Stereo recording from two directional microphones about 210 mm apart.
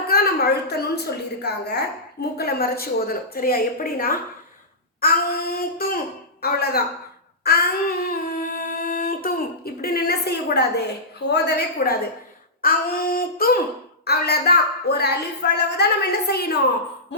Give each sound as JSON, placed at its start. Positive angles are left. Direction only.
{"t": 0.1, "sound": "a woman's voice", "side_deg": 50}
{"t": 7.4, "sound": "a sound", "side_deg": 45}
{"t": 11.3, "sound": "speech", "side_deg": 50}